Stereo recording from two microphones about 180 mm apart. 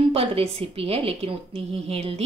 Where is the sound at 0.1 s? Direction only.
30° right (ahead or behind).